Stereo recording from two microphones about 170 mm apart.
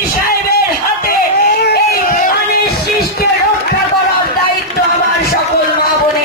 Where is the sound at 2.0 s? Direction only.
50° left (ahead or behind).